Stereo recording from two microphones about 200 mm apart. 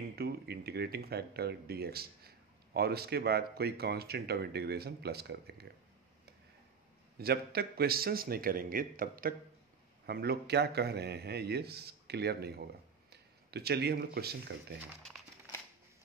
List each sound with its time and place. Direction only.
0.1 s speech: 50° right (ahead or behind)
7.2 s a man's voice: 50° right (ahead or behind)